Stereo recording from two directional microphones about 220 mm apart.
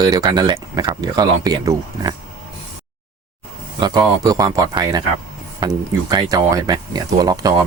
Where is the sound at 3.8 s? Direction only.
20° right (ahead or behind).